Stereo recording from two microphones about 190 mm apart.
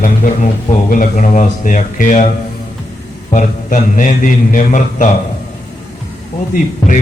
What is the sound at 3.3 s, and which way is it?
A man's voice, 40° left (ahead or behind).